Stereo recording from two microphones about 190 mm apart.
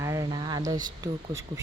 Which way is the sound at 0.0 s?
20° right (ahead or behind).